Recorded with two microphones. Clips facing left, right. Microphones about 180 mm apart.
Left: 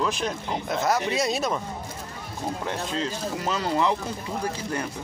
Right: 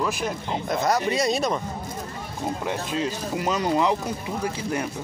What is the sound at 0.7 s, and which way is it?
Speech, centre (ahead or behind).